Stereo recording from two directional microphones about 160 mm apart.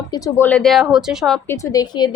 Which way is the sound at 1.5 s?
25° left (ahead or behind).